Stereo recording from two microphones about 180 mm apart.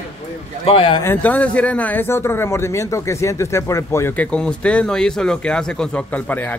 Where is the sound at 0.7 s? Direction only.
30° left (ahead or behind).